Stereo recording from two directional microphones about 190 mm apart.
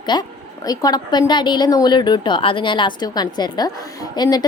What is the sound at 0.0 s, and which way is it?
A woman's voice, 20° left (ahead or behind).